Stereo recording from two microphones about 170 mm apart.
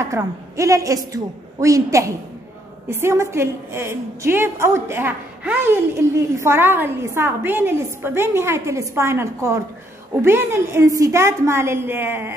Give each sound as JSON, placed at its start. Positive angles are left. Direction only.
{"t": 0.0, "sound": "a woman's voice", "side_deg": -20}